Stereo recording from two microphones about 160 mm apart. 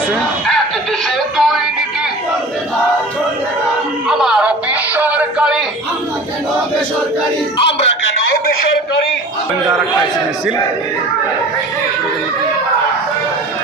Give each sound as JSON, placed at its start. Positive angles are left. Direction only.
{"t": 1.4, "sound": "music", "side_deg": 0}
{"t": 4.1, "sound": "music", "side_deg": -5}
{"t": 7.6, "sound": "music", "side_deg": 35}